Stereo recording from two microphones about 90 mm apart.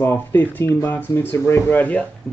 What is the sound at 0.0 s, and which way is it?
Speech, 20° left (ahead or behind).